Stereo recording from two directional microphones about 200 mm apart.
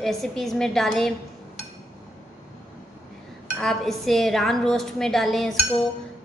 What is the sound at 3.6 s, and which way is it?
A woman's voice, centre (ahead or behind).